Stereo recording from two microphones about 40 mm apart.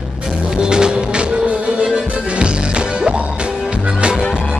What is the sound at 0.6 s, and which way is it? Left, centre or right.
Music, right.